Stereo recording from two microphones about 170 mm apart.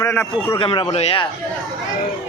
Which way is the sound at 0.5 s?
30° left (ahead or behind).